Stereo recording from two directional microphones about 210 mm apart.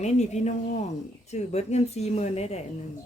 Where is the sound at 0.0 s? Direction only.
35° left (ahead or behind).